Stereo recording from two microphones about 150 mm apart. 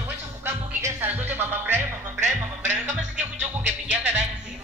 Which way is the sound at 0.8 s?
15° right (ahead or behind).